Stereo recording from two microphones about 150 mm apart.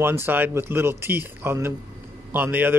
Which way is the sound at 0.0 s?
15° right (ahead or behind).